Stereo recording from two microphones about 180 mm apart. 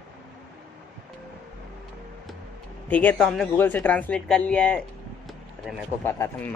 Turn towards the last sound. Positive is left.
turn(degrees=10)  # may be behind; listen again after turning